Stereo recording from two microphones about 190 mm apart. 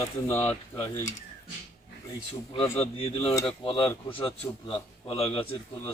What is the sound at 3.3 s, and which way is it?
Speech, 10° left (ahead or behind).